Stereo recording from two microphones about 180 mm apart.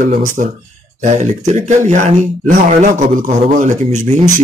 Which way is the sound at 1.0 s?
40° right (ahead or behind).